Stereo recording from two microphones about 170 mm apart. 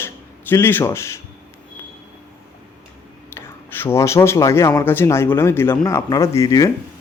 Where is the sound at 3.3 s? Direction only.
15° left (ahead or behind).